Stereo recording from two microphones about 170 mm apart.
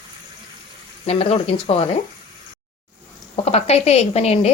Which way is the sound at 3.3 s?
40° left (ahead or behind).